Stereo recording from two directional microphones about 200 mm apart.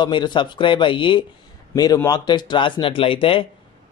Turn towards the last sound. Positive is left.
turn(degrees=25)  # may be behind; listen again after turning